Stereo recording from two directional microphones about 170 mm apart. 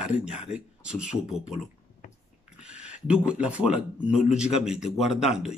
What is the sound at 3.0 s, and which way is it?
Speech, 5° right (ahead or behind).